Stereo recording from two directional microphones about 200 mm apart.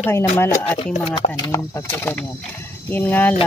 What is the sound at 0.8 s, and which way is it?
Speech, 30° left (ahead or behind).